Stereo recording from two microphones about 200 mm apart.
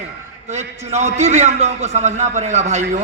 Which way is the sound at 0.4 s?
35° right (ahead or behind).